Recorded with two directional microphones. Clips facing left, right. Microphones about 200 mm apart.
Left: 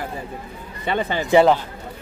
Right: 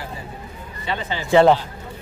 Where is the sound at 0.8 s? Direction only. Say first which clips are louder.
Left 5 dB; 55° left (ahead or behind).